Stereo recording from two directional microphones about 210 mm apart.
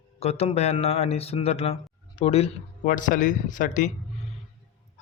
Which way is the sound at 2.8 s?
40° left (ahead or behind).